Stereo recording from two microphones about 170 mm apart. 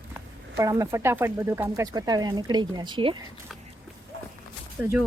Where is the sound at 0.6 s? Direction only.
20° right (ahead or behind).